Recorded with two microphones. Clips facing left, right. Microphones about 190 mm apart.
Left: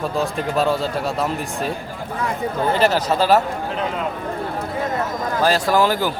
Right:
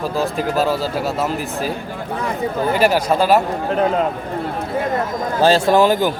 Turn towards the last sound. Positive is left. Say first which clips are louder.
# right 4 dB
turn(degrees=-20)  # may be behind; listen again after turning